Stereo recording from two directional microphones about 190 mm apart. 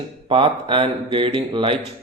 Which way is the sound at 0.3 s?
25° right (ahead or behind).